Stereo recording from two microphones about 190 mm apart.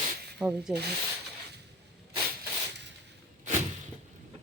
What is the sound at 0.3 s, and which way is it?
Rub, centre (ahead or behind).